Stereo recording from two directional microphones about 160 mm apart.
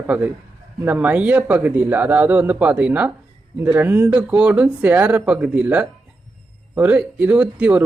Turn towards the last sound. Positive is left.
turn(degrees=-10)  # may be behind; listen again after turning